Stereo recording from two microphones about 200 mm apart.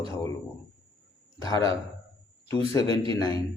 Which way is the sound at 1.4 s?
20° left (ahead or behind).